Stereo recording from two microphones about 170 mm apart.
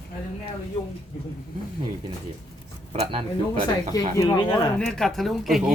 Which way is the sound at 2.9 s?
30° right (ahead or behind).